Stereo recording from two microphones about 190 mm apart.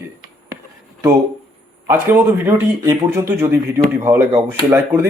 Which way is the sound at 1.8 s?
10° right (ahead or behind).